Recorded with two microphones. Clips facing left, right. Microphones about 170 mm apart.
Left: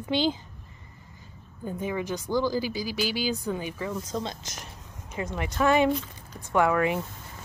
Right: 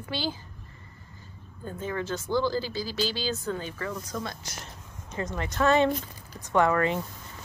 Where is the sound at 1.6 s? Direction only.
15° left (ahead or behind).